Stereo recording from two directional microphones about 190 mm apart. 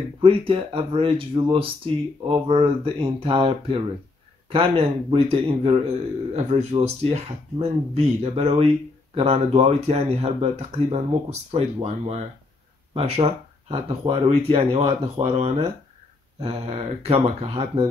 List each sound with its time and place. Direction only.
0.2 s speech: 30° right (ahead or behind)